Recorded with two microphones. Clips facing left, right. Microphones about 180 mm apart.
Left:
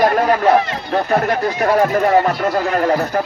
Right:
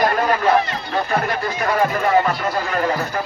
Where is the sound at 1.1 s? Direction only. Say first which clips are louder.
Left 7 dB; 45° left (ahead or behind).